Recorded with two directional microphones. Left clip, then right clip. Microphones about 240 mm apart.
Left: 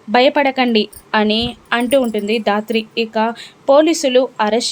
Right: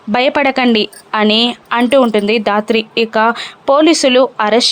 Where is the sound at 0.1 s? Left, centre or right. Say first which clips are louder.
Even; centre.